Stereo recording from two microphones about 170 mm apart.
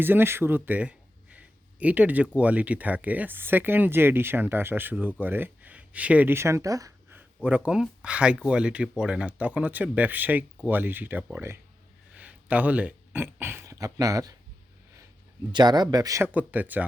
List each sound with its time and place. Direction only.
0.0 s a man's voice: 10° right (ahead or behind)
15.5 s speech: 25° right (ahead or behind)